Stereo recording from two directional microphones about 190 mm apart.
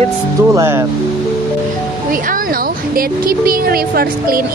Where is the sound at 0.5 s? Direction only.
15° right (ahead or behind).